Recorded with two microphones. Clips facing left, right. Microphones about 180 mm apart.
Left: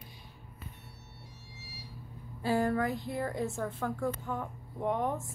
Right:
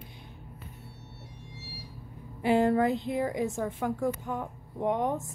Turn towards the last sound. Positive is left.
turn(degrees=-20)  # may be behind; listen again after turning